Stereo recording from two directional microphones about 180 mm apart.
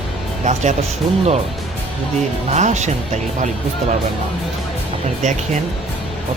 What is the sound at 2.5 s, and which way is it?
Speech, 40° right (ahead or behind).